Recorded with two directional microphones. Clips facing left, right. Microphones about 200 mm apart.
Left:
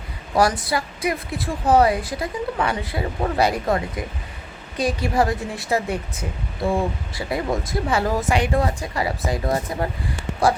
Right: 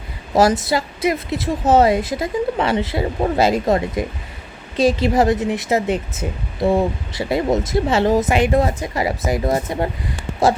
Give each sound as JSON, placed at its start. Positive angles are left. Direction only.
{"t": 0.3, "sound": "a woman's voice", "side_deg": -25}